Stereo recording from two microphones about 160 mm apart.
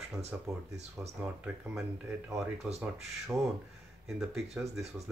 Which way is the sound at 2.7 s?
10° right (ahead or behind).